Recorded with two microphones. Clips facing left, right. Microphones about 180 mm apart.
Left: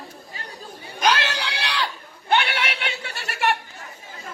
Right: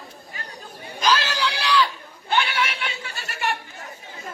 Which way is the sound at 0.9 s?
65° left (ahead or behind).